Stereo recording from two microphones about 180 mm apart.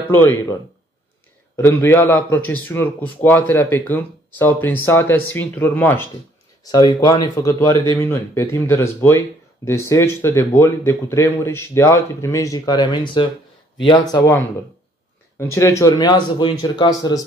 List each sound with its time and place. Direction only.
0.1 s a man's voice: 10° left (ahead or behind)
1.6 s a man's voice: 15° left (ahead or behind)
6.6 s a man's voice: 20° left (ahead or behind)
14.1 s a man's voice: 15° left (ahead or behind)